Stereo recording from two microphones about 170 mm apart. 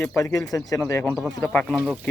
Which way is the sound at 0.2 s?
20° left (ahead or behind).